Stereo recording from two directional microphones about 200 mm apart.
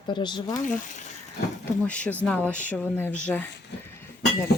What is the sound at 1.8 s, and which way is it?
Speech, 5° left (ahead or behind).